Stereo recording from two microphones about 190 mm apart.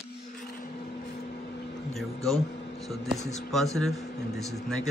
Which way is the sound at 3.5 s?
Centre (ahead or behind).